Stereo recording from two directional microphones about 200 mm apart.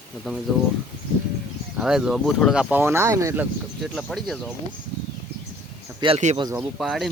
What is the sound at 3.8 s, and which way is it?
Speech, centre (ahead or behind).